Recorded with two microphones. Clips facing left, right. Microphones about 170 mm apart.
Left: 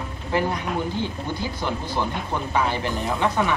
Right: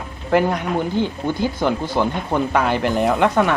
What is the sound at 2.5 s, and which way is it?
Speech, 70° right (ahead or behind).